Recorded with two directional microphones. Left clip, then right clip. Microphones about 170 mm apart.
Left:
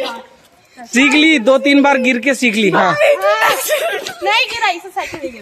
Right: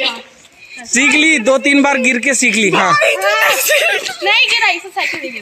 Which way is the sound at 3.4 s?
65° left (ahead or behind).